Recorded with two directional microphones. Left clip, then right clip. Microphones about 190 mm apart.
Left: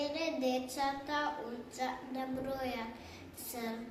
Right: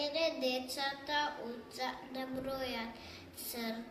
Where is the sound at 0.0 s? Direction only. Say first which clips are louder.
Right 1 dB; 20° left (ahead or behind).